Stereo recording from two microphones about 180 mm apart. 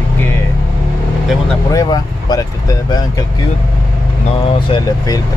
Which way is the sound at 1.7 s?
20° left (ahead or behind).